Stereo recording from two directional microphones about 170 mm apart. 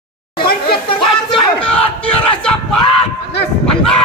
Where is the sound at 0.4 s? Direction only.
65° left (ahead or behind).